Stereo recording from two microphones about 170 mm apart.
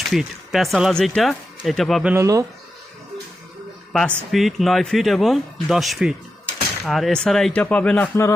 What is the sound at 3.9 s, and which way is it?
Speech, 5° left (ahead or behind).